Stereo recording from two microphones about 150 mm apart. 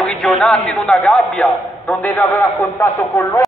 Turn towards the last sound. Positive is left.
turn(degrees=15)  # may be behind; listen again after turning